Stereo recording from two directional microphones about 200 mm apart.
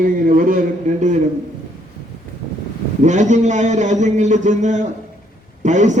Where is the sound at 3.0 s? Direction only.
35° right (ahead or behind).